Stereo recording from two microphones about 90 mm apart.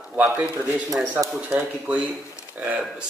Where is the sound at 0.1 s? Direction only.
15° right (ahead or behind).